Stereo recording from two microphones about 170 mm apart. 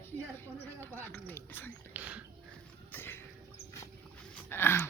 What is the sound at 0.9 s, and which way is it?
Speech, 10° left (ahead or behind).